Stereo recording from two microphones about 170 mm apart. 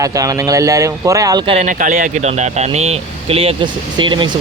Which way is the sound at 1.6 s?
45° right (ahead or behind).